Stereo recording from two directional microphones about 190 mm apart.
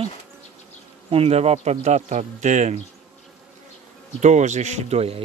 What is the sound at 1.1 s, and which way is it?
Speech, 30° right (ahead or behind).